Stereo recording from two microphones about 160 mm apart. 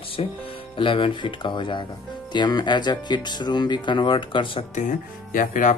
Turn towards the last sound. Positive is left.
turn(degrees=55)  # may be behind; listen again after turning